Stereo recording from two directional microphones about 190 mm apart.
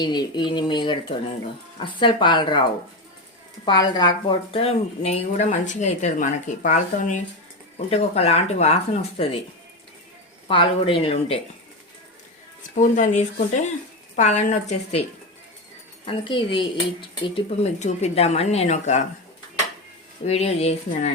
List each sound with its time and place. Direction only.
0.0 s speech: 20° left (ahead or behind)
3.7 s speech: 25° left (ahead or behind)
10.5 s speech: 30° left (ahead or behind)
12.7 s speech: 40° left (ahead or behind)
16.0 s speech: 25° left (ahead or behind)
20.2 s speech: 35° left (ahead or behind)